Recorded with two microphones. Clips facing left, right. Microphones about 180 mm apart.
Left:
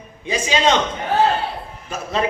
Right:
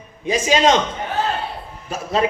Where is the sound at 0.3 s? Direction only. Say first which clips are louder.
Right 2 dB; 40° right (ahead or behind).